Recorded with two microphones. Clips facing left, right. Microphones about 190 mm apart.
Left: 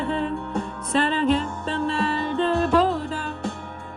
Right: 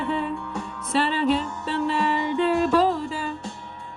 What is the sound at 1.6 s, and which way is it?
Music, 15° right (ahead or behind).